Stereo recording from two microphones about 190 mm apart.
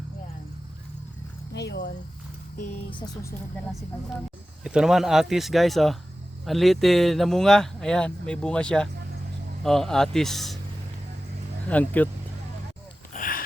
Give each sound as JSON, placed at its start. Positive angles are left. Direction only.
{"t": 1.5, "sound": "speech", "side_deg": 65}
{"t": 4.6, "sound": "speech", "side_deg": -5}
{"t": 11.7, "sound": "speech", "side_deg": 5}
{"t": 13.1, "sound": "a sound", "side_deg": 45}